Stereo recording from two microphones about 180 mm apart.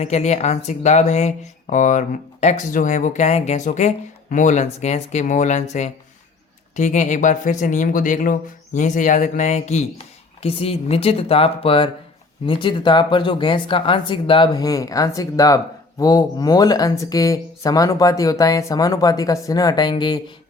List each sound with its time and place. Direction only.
0.0 s speech: 40° left (ahead or behind); by 20.3 s 25° left (ahead or behind)